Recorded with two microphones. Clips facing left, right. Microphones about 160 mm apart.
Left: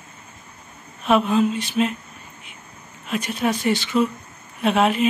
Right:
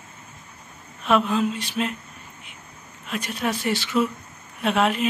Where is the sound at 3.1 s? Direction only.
Centre (ahead or behind).